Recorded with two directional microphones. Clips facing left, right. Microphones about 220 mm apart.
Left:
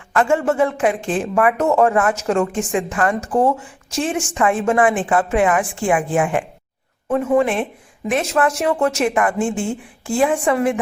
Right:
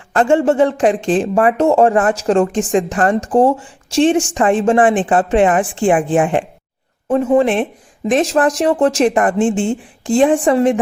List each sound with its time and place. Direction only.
0.1 s speech: 30° right (ahead or behind)